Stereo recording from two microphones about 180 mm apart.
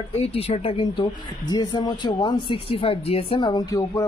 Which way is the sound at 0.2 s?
30° left (ahead or behind).